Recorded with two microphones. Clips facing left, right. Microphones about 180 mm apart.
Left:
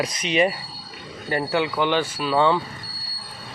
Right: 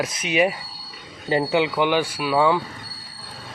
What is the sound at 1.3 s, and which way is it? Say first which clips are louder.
Speech: right 3 dB; 20° right (ahead or behind).